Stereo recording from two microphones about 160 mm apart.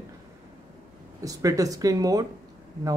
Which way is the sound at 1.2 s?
20° right (ahead or behind).